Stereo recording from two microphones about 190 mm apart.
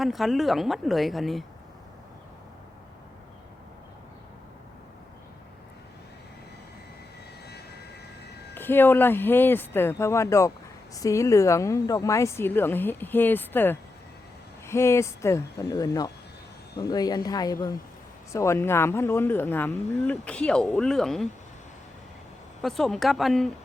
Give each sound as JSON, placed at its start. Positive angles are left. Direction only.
{"t": 0.0, "sound": "speech", "side_deg": 0}
{"t": 8.5, "sound": "speech", "side_deg": 10}
{"t": 22.6, "sound": "speech", "side_deg": 0}